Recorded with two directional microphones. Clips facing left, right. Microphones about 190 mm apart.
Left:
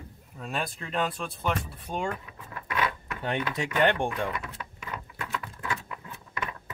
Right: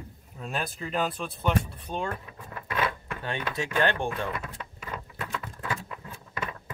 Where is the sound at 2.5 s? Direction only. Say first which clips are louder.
Even; 30° right (ahead or behind).